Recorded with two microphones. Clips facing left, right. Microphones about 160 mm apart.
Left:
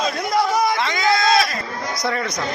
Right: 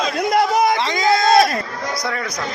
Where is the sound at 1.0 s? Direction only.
45° right (ahead or behind).